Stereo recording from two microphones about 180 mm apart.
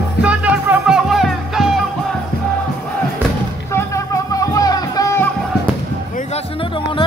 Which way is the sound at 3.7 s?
20° left (ahead or behind).